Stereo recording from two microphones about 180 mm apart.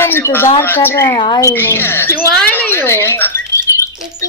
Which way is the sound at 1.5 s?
10° left (ahead or behind).